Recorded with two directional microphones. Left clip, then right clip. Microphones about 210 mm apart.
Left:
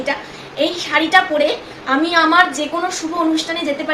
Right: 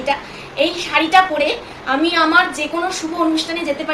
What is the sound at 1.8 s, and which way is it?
Speech, 20° left (ahead or behind).